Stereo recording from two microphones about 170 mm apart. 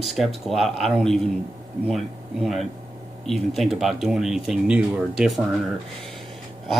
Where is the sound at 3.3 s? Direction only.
Centre (ahead or behind).